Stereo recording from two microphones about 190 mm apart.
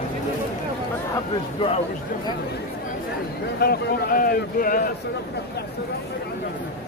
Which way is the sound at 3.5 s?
50° left (ahead or behind).